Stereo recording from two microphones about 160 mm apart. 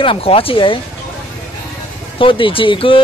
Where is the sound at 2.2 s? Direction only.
35° left (ahead or behind).